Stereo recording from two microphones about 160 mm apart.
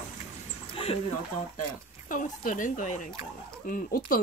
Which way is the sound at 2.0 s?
55° left (ahead or behind).